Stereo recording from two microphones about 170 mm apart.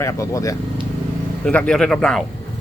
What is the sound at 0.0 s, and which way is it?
Speech, 20° left (ahead or behind).